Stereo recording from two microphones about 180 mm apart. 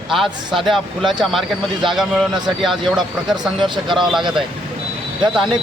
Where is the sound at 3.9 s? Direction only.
Centre (ahead or behind).